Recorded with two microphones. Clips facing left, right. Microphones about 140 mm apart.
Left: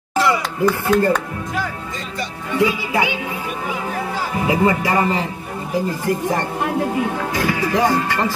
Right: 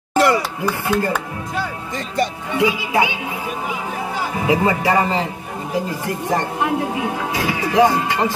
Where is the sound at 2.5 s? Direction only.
20° right (ahead or behind).